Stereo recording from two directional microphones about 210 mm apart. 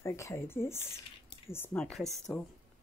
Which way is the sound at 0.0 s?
15° left (ahead or behind).